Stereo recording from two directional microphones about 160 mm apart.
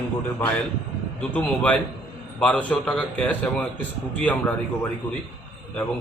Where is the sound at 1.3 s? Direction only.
10° left (ahead or behind).